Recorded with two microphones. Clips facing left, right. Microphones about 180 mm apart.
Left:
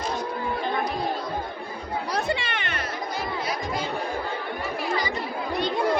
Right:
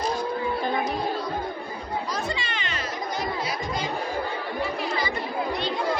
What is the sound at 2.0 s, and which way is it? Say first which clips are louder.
Music: left 3 dB; 60° left (ahead or behind).